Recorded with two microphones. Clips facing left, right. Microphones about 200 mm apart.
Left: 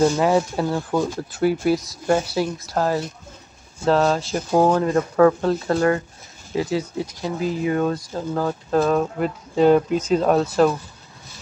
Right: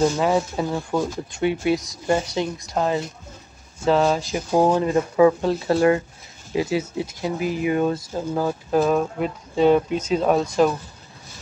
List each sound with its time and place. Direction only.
0.0 s speech: 5° left (ahead or behind)
0.7 s speech: 5° right (ahead or behind)
5.5 s speech: 20° right (ahead or behind); by 10.5 s centre (ahead or behind)